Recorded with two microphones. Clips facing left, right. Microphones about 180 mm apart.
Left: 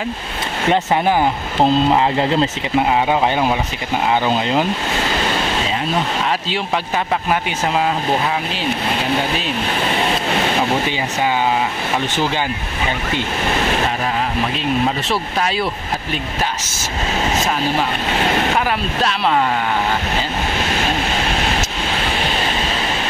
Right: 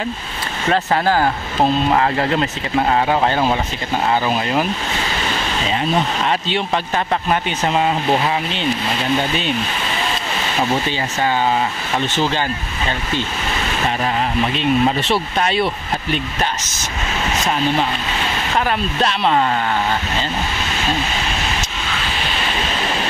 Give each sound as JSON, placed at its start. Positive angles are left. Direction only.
{"t": 0.7, "sound": "speech", "side_deg": 20}
{"t": 2.9, "sound": "speech", "side_deg": 10}
{"t": 4.1, "sound": "speech", "side_deg": 20}
{"t": 7.2, "sound": "speech", "side_deg": 0}
{"t": 14.6, "sound": "speech", "side_deg": 0}
{"t": 18.1, "sound": "vehicle", "side_deg": 55}
{"t": 19.0, "sound": "speech", "side_deg": 0}